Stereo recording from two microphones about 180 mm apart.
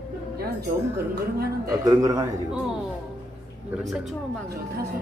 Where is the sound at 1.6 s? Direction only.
20° right (ahead or behind).